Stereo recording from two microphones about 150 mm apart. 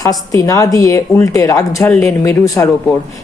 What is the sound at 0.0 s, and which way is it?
Speech, 25° left (ahead or behind).